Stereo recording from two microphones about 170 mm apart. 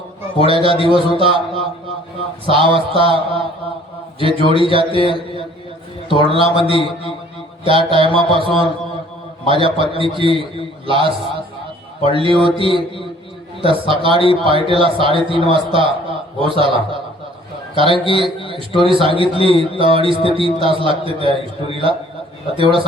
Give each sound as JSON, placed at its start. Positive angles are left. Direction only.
{"t": 0.4, "sound": "a man's voice", "side_deg": -30}
{"t": 6.1, "sound": "a man's voice", "side_deg": -30}
{"t": 22.5, "sound": "a man's voice", "side_deg": -30}